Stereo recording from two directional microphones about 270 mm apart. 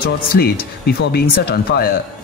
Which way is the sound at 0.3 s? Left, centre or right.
Left.